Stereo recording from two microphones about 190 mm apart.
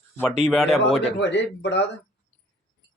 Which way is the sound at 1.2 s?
65° left (ahead or behind).